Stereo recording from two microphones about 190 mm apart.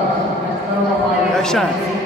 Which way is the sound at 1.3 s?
5° left (ahead or behind).